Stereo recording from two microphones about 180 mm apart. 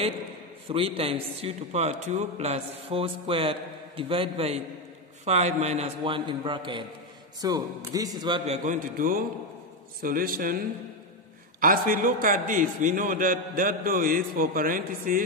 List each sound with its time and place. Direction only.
0.7 s a man's voice: 30° right (ahead or behind)
8.5 s a man's voice: 50° right (ahead or behind)
11.6 s a man's voice: 50° right (ahead or behind)